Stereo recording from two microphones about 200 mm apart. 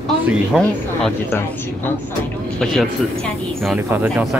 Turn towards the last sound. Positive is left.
turn(degrees=-10)  # may be behind; listen again after turning